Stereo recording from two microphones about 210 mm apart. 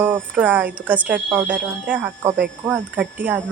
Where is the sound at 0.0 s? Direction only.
10° right (ahead or behind).